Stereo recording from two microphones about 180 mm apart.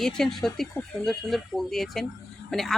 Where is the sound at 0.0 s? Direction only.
Centre (ahead or behind).